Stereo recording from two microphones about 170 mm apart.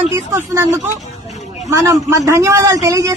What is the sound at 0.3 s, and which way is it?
A man's voice, 15° right (ahead or behind).